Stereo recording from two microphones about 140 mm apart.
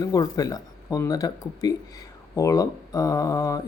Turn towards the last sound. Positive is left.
turn(degrees=25)  # may be behind; listen again after turning